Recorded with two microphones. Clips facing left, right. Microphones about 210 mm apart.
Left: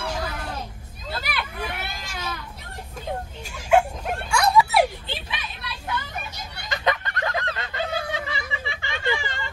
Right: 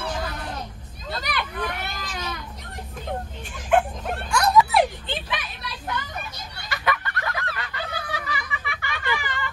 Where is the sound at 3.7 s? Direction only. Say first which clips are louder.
Left 2 dB; 10° left (ahead or behind).